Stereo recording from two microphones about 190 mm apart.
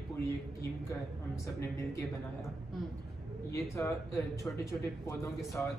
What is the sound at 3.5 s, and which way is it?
Speech, 15° left (ahead or behind).